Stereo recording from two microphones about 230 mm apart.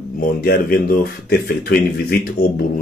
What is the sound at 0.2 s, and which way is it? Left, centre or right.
Speech, left.